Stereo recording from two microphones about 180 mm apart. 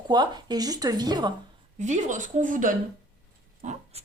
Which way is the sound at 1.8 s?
45° right (ahead or behind).